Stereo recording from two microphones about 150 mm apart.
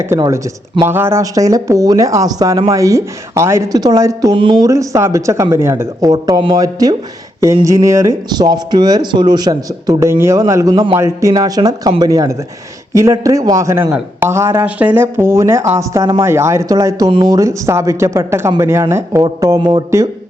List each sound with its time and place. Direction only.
0.8 s speech: 15° right (ahead or behind); by 19.8 s 30° right (ahead or behind)